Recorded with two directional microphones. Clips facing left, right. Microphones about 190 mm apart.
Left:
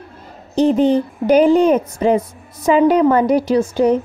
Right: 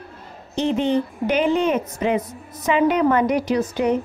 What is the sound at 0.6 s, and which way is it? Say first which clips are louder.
A woman's voice: left 6 dB; 40° left (ahead or behind).